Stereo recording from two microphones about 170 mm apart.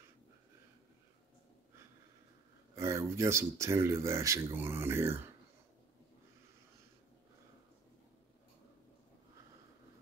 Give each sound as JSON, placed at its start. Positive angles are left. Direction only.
{"t": 2.7, "sound": "speech", "side_deg": -15}